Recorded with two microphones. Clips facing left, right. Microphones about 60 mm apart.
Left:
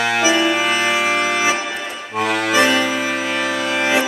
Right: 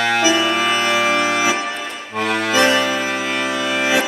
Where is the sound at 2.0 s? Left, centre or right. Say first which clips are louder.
Left 1 dB; centre.